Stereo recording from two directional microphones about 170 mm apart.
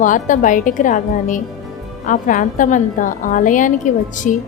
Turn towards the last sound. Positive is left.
turn(degrees=50)  # may be behind; listen again after turning